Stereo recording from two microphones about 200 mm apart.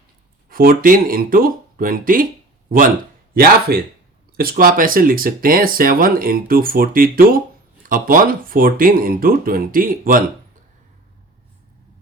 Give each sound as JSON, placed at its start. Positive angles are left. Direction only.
{"t": 0.4, "sound": "speech", "side_deg": -45}